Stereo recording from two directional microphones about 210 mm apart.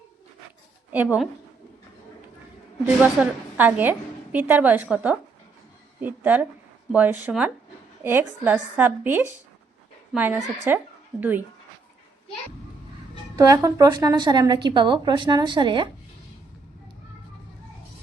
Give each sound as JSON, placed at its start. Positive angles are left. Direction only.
{"t": 0.9, "sound": "speech", "side_deg": -5}
{"t": 3.0, "sound": "a woman's voice", "side_deg": -5}
{"t": 13.3, "sound": "a woman's voice", "side_deg": -15}